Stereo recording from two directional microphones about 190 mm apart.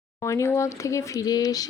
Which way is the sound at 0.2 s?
15° left (ahead or behind).